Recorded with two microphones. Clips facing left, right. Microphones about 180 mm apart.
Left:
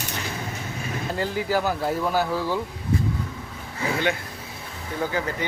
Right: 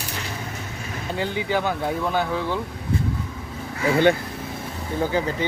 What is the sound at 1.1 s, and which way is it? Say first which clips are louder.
Speech: right 1 dB; centre (ahead or behind).